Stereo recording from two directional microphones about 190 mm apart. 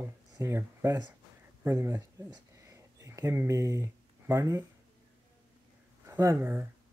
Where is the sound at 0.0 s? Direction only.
15° right (ahead or behind).